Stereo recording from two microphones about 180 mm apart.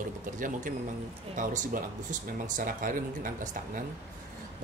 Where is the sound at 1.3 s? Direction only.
45° right (ahead or behind).